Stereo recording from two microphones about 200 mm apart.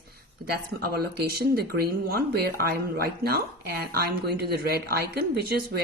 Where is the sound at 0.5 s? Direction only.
50° right (ahead or behind).